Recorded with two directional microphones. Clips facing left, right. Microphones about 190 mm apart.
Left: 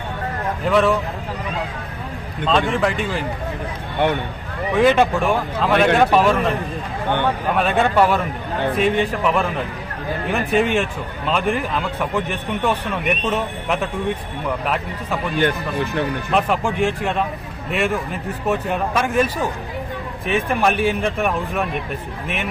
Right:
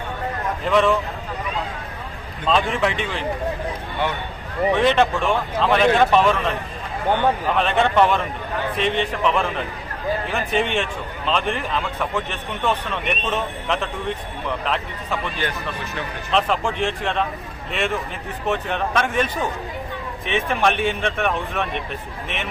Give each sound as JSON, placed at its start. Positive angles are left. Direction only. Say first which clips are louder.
{"t": 0.7, "sound": "a man's voice", "louder": "left 1 dB", "side_deg": 5}
{"t": 2.5, "sound": "a man's voice", "louder": "left 1 dB", "side_deg": 0}
{"t": 4.0, "sound": "speech", "louder": "left 6 dB", "side_deg": 55}
{"t": 4.7, "sound": "a man's voice", "louder": "left 3 dB", "side_deg": 5}
{"t": 7.5, "sound": "a man's voice", "louder": "left 4 dB", "side_deg": 5}
{"t": 15.4, "sound": "speech", "louder": "left 7 dB", "side_deg": 55}
{"t": 16.3, "sound": "a man's voice", "louder": "even", "side_deg": 10}